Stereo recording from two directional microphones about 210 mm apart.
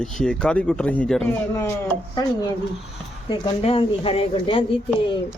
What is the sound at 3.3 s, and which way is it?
Speech, 25° left (ahead or behind).